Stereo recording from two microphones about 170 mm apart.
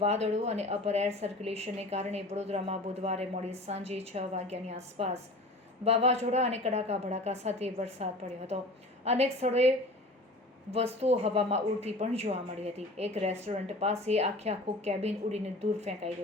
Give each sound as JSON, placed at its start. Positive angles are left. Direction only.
{"t": 0.0, "sound": "speech", "side_deg": -40}
{"t": 9.0, "sound": "speech", "side_deg": -40}